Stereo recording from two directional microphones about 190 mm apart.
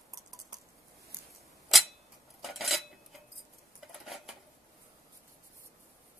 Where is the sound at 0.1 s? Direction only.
20° right (ahead or behind).